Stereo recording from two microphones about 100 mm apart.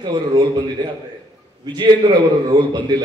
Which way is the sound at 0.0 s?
45° right (ahead or behind).